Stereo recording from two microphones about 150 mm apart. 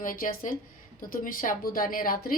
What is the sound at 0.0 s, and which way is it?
A woman's voice, 70° left (ahead or behind).